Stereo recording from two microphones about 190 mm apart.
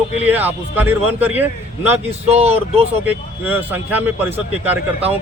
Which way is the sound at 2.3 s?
35° right (ahead or behind).